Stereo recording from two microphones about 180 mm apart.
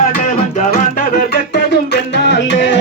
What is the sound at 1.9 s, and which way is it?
Music, 75° left (ahead or behind).